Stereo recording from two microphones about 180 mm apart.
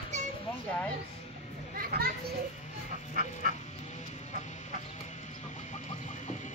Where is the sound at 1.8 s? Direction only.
55° right (ahead or behind).